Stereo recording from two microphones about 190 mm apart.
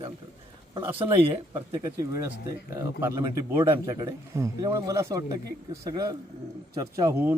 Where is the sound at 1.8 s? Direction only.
15° right (ahead or behind).